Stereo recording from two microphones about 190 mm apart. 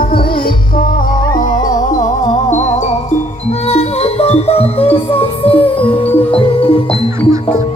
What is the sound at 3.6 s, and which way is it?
Music, 35° left (ahead or behind).